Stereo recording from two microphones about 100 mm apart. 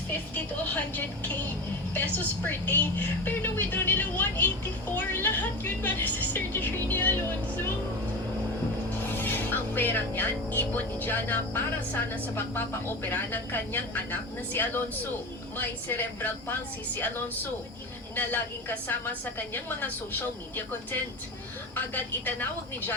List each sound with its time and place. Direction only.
1.9 s speech: 20° left (ahead or behind)
9.0 s speech: 20° left (ahead or behind)
21.9 s speech: 20° left (ahead or behind)